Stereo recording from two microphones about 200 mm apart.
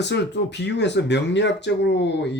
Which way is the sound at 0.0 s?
60° left (ahead or behind).